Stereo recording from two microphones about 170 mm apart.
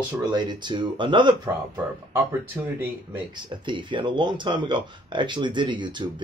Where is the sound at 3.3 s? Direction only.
30° right (ahead or behind).